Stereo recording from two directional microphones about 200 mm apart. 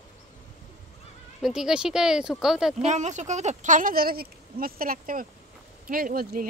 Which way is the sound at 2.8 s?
35° right (ahead or behind).